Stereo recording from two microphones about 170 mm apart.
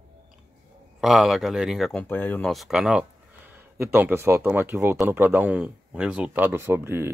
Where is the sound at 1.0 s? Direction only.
Centre (ahead or behind).